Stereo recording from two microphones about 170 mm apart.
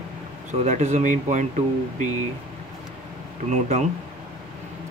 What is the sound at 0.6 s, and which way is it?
Speech, 40° right (ahead or behind).